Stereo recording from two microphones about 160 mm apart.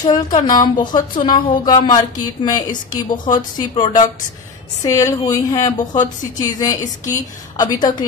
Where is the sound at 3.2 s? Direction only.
25° left (ahead or behind).